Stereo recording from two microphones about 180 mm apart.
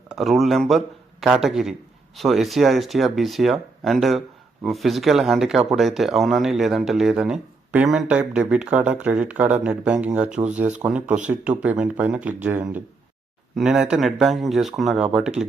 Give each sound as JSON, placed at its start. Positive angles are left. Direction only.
{"t": 0.2, "sound": "speech", "side_deg": 0}